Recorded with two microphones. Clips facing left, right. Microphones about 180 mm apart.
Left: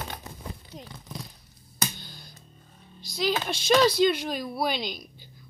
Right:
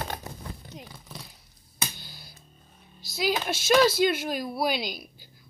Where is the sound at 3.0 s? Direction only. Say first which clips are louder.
Even; 5° right (ahead or behind).